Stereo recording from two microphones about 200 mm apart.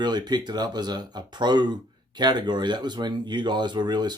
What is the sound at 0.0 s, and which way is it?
Speech, 20° right (ahead or behind).